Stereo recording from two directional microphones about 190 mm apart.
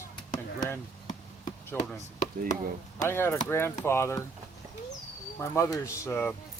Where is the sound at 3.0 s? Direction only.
15° left (ahead or behind).